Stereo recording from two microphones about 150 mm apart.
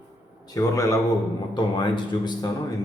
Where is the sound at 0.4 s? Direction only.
25° left (ahead or behind).